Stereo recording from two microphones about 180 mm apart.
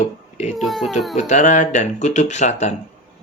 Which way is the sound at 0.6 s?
Centre (ahead or behind).